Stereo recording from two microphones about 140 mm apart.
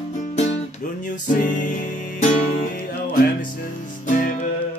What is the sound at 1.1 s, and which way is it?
Music, 65° left (ahead or behind).